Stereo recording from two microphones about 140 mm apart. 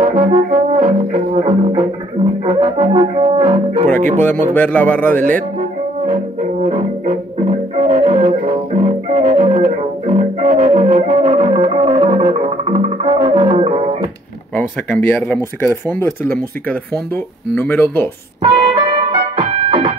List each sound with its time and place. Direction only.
0.0 s brass instrument: 70° right (ahead or behind)
2.4 s music: 40° right (ahead or behind)
4.6 s speech: 10° left (ahead or behind)
6.6 s music: 45° right (ahead or behind)
15.0 s speech: 15° left (ahead or behind)
17.6 s speech: 15° left (ahead or behind)
18.4 s music: 40° right (ahead or behind)